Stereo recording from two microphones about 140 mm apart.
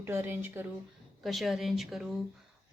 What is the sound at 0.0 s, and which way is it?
Speech, 15° right (ahead or behind).